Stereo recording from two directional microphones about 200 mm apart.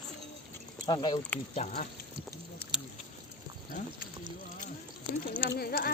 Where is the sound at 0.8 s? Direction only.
20° left (ahead or behind).